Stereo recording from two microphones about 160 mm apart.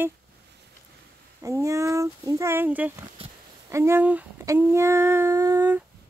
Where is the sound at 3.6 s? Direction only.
15° right (ahead or behind).